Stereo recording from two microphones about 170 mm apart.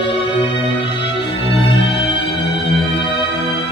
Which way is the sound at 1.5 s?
90° left.